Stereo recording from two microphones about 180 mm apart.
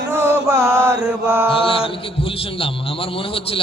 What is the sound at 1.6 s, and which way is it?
Music, 30° left (ahead or behind).